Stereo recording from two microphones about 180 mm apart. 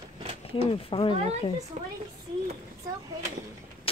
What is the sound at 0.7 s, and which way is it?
Speech, 30° left (ahead or behind).